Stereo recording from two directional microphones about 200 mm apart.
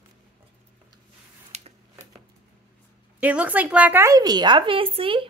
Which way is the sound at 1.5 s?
35° right (ahead or behind).